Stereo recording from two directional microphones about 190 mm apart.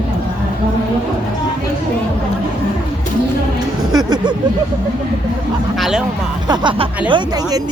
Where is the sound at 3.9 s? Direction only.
20° right (ahead or behind).